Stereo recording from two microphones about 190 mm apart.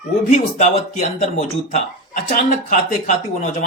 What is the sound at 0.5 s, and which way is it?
Speech, 40° left (ahead or behind).